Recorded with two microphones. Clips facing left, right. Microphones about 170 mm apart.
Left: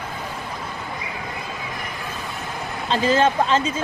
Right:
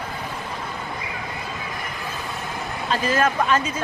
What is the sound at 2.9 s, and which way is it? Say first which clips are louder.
Speech: left 3 dB; 25° left (ahead or behind).